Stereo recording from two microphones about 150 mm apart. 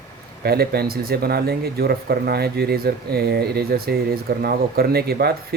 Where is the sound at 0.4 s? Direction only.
90° right.